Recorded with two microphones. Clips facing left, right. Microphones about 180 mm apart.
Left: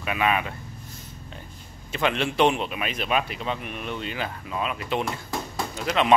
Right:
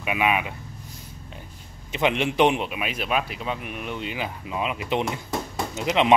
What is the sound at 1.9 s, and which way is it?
Speech, 20° right (ahead or behind).